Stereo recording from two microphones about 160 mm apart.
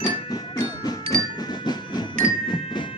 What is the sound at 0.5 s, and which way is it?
Music, 25° left (ahead or behind).